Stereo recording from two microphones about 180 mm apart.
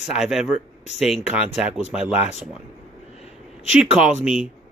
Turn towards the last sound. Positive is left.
turn(degrees=-5)  # may be behind; listen again after turning